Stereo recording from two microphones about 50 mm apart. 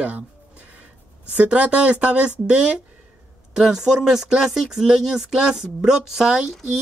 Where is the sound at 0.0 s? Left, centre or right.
Right.